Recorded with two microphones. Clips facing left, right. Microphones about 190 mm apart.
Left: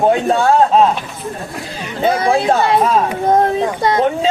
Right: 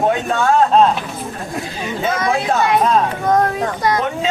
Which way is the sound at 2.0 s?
30° left (ahead or behind).